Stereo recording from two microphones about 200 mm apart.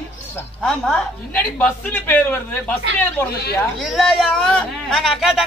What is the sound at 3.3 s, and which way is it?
Speech, 50° left (ahead or behind).